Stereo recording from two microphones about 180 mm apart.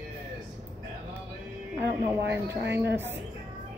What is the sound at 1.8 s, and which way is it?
Speech, 70° right (ahead or behind).